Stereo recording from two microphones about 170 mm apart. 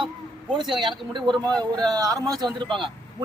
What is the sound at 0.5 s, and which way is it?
A man's voice, centre (ahead or behind).